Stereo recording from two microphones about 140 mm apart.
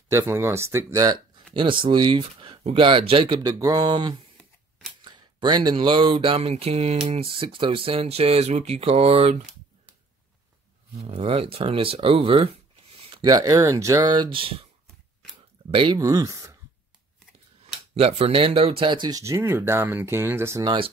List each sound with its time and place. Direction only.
0.1 s speech: 20° right (ahead or behind); by 3.3 s 40° right (ahead or behind)
3.4 s speech: 25° right (ahead or behind)
5.0 s a sound: 30° right (ahead or behind)
11.0 s speech: 45° right (ahead or behind)
12.9 s a sound: 45° right (ahead or behind)
13.2 s speech: 25° right (ahead or behind)
15.7 s speech: 40° right (ahead or behind)
16.0 s speech: 25° right (ahead or behind)
17.9 s speech: 45° right (ahead or behind); by 20.6 s 15° right (ahead or behind)
20.6 s speech: 35° right (ahead or behind)